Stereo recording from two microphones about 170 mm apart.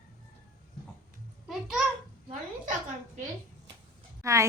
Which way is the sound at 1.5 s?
5° right (ahead or behind).